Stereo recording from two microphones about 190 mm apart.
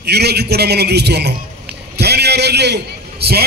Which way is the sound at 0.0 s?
60° right (ahead or behind).